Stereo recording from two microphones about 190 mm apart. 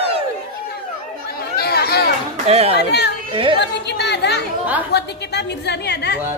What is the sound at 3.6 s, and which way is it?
Chatter, 65° left (ahead or behind).